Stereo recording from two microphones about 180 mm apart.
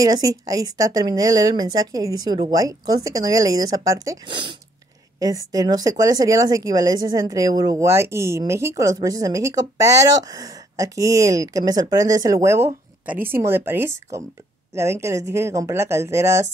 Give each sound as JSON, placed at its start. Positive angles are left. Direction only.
{"t": 0.0, "sound": "speech", "side_deg": -20}